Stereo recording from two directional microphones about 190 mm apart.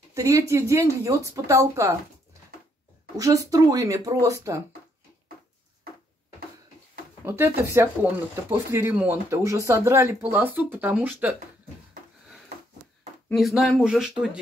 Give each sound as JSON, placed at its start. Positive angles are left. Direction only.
{"t": 0.1, "sound": "speech", "side_deg": -15}
{"t": 3.2, "sound": "speech", "side_deg": -15}
{"t": 7.2, "sound": "speech", "side_deg": -15}
{"t": 13.3, "sound": "speech", "side_deg": 0}